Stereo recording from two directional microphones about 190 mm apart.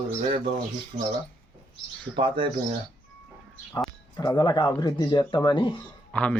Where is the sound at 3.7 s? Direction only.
20° left (ahead or behind).